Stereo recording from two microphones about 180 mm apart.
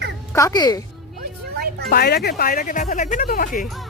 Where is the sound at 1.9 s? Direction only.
60° left (ahead or behind).